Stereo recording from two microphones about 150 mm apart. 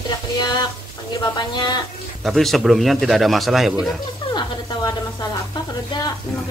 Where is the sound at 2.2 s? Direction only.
Centre (ahead or behind).